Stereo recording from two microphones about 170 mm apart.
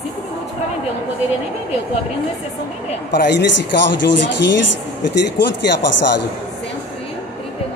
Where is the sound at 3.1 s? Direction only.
90° left.